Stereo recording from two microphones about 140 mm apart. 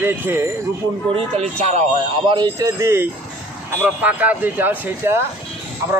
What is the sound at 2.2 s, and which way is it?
Speech, 30° right (ahead or behind).